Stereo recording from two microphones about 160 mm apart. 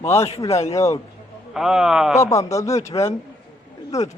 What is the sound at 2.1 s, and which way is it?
A man's voice, 20° left (ahead or behind).